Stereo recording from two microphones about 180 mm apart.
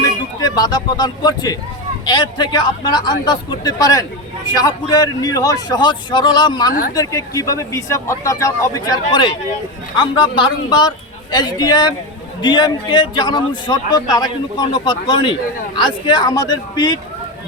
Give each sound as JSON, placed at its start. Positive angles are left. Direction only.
{"t": 0.0, "sound": "a man's voice", "side_deg": 20}